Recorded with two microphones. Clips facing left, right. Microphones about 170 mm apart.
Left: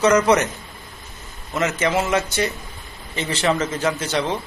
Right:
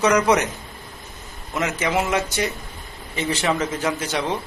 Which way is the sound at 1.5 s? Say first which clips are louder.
Left 2 dB; 15° right (ahead or behind).